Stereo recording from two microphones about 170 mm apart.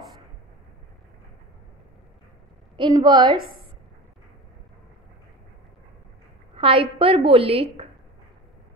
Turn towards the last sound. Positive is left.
turn(degrees=-35)  # may be behind; listen again after turning